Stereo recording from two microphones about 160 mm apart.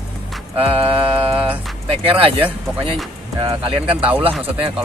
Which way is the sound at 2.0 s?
35° right (ahead or behind).